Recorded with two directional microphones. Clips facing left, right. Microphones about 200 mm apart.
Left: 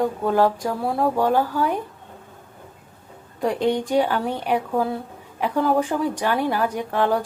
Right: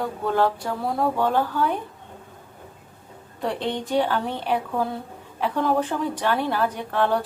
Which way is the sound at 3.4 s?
15° left (ahead or behind).